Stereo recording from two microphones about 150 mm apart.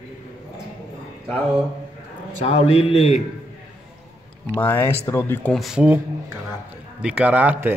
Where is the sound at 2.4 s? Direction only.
40° left (ahead or behind).